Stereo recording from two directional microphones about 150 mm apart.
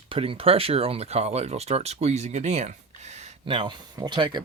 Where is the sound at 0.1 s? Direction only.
40° right (ahead or behind).